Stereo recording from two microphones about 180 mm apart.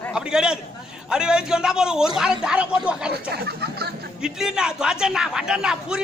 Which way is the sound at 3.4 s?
60° right (ahead or behind).